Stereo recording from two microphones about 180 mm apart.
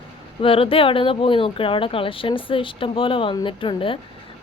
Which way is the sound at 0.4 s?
30° left (ahead or behind).